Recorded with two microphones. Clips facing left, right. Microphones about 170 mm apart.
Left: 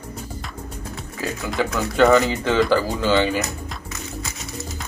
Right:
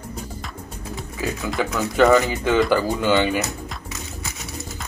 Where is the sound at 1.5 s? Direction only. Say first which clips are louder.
Left 2 dB; 5° right (ahead or behind).